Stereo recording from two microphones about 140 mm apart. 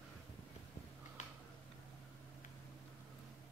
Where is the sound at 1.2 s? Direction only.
60° left (ahead or behind).